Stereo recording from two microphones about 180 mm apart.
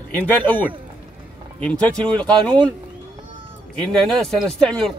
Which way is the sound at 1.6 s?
5° left (ahead or behind).